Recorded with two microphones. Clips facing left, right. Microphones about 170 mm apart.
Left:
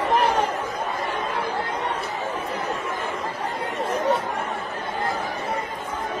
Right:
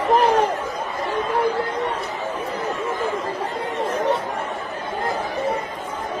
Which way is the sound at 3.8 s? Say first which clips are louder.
Right 2 dB; 35° right (ahead or behind).